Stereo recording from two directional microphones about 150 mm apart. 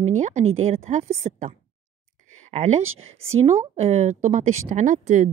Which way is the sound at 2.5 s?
45° right (ahead or behind).